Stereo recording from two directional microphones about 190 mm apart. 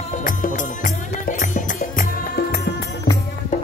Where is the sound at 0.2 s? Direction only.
45° left (ahead or behind).